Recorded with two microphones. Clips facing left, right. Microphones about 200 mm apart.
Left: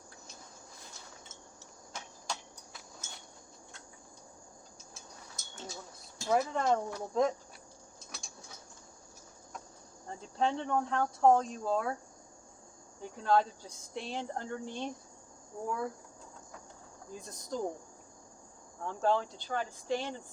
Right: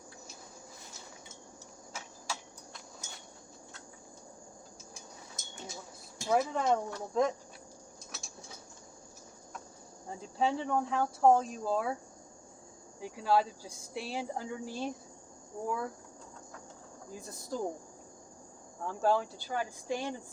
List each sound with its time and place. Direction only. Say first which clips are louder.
1.9 s a sound: even; 5° right (ahead or behind)
4.9 s a sound: right 1 dB; 15° right (ahead or behind)
6.2 s speech: even; centre (ahead or behind)
10.1 s speech: right 1 dB; 5° right (ahead or behind)
13.0 s speech: even; 5° right (ahead or behind)
17.1 s speech: even; 5° right (ahead or behind)
18.9 s speech: right 1 dB; 5° right (ahead or behind)